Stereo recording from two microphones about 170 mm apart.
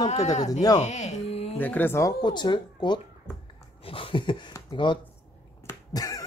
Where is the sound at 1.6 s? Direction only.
10° left (ahead or behind).